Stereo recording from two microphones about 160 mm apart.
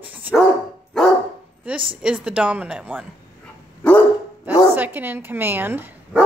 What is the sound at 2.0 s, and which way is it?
A woman's voice, 5° right (ahead or behind).